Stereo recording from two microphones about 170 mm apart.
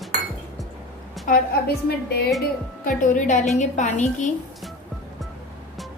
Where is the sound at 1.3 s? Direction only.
50° left (ahead or behind).